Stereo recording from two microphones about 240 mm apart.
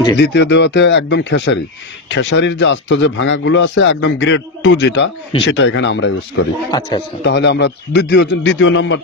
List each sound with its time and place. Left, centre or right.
0.2 s speech: left